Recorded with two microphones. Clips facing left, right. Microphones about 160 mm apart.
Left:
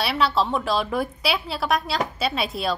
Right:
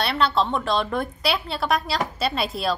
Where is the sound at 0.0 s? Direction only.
Centre (ahead or behind).